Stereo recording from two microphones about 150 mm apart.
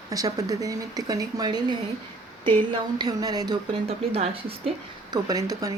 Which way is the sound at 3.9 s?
40° right (ahead or behind).